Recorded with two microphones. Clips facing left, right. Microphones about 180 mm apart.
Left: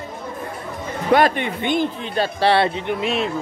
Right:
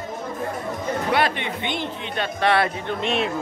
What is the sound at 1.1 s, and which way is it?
Speech, 45° left (ahead or behind).